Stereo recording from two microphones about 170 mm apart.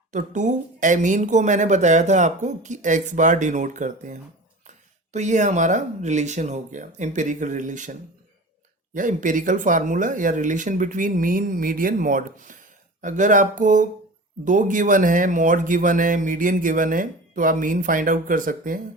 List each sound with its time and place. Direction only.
0.1 s speech: 45° right (ahead or behind)
9.0 s speech: 50° right (ahead or behind)